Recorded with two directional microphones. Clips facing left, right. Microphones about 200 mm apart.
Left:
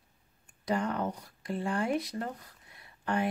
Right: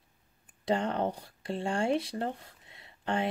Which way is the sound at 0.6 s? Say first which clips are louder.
Right 2 dB; 25° right (ahead or behind).